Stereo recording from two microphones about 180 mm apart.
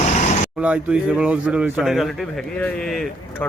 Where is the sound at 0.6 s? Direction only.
5° right (ahead or behind).